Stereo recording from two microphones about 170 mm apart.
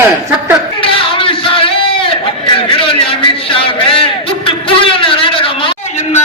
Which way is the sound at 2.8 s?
30° left (ahead or behind).